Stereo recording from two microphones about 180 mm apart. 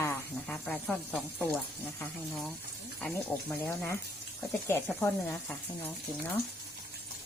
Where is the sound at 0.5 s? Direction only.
5° left (ahead or behind).